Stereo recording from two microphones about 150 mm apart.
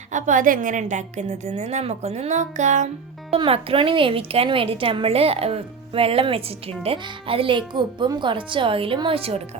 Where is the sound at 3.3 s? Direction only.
40° right (ahead or behind).